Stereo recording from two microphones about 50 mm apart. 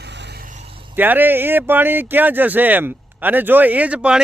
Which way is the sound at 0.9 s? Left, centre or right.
Right.